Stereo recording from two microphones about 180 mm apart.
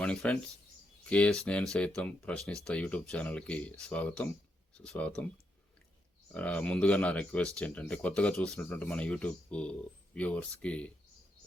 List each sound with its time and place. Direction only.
0.0 s speech: 5° left (ahead or behind)
6.3 s speech: 5° left (ahead or behind)